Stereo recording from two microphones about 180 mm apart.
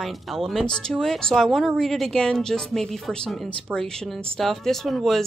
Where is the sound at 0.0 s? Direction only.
Centre (ahead or behind).